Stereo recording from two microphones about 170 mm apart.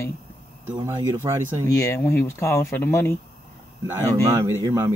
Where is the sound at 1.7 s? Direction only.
15° left (ahead or behind).